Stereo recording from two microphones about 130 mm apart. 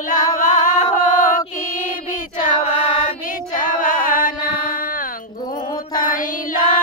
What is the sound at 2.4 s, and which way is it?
Chant, 50° left (ahead or behind).